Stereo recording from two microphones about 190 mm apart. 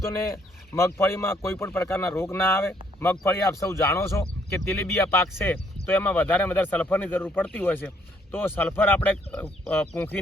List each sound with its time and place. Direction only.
0.7 s speech: 15° left (ahead or behind)